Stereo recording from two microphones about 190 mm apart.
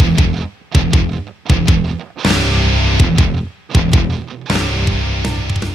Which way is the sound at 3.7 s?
Centre (ahead or behind).